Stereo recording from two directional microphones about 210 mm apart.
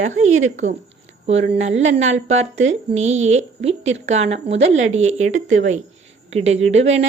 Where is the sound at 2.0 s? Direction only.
30° right (ahead or behind).